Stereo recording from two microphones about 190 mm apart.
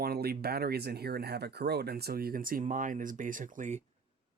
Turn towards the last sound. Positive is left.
turn(degrees=-40)  # may be behind; listen again after turning